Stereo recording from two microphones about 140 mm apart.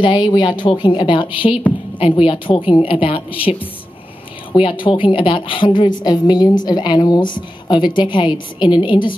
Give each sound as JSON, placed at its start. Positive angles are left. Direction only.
{"t": 0.0, "sound": "a woman's voice", "side_deg": 35}
{"t": 4.6, "sound": "a woman's voice", "side_deg": 40}